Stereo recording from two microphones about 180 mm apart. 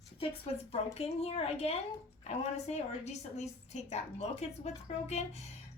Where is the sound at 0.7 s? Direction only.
35° left (ahead or behind).